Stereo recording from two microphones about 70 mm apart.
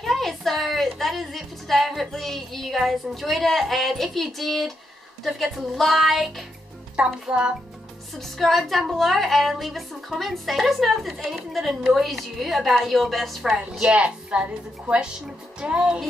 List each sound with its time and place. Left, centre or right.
0.0 s a woman's voice: centre
7.1 s a woman's voice: centre
8.2 s a woman's voice: centre
13.8 s a woman's voice: centre